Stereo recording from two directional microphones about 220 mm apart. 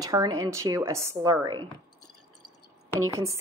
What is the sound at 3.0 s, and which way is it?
Speech, 15° right (ahead or behind).